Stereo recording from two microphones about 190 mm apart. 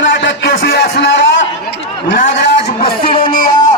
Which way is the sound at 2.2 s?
35° left (ahead or behind).